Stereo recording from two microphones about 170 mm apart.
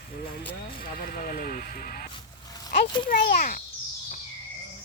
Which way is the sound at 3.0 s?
60° left (ahead or behind).